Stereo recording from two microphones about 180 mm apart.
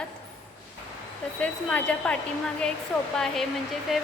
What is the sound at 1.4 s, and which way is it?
Speech, 5° left (ahead or behind).